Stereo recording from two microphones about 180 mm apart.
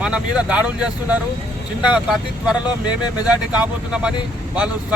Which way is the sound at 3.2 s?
5° right (ahead or behind).